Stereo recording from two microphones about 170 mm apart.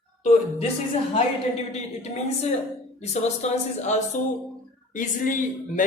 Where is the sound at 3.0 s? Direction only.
40° left (ahead or behind).